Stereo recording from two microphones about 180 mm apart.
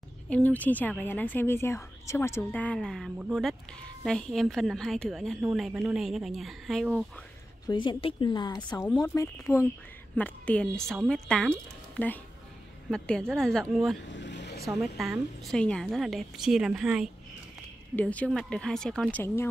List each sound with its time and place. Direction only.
0.3 s a woman's voice: 10° left (ahead or behind)
7.6 s a woman's voice: 25° left (ahead or behind)
8.8 s a woman's voice: 10° left (ahead or behind)
14.0 s vehicle: 80° left
14.7 s a woman's voice: centre (ahead or behind)
17.9 s a woman's voice: 5° left (ahead or behind)